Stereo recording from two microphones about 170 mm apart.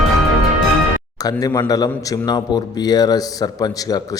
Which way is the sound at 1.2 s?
20° left (ahead or behind).